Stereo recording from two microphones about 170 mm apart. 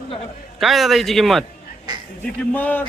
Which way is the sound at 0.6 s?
Centre (ahead or behind).